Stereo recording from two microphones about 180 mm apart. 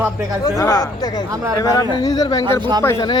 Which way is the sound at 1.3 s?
20° right (ahead or behind).